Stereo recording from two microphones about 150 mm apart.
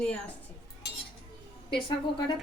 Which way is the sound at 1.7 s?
35° left (ahead or behind).